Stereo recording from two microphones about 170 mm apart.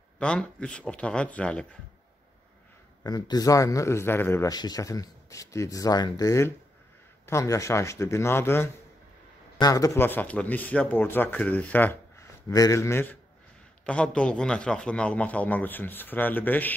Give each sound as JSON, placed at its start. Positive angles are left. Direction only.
{"t": 0.2, "sound": "a man's voice", "side_deg": 5}
{"t": 3.0, "sound": "a man's voice", "side_deg": 25}